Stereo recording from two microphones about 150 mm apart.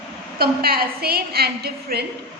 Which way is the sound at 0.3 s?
90° right.